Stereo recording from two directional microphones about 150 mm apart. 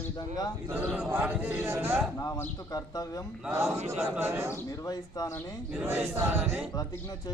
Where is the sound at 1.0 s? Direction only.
15° right (ahead or behind).